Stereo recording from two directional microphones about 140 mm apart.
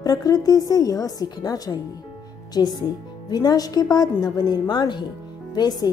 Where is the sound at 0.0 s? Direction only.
25° left (ahead or behind).